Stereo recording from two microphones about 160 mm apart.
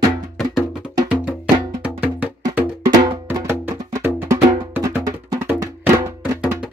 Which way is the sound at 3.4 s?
15° right (ahead or behind).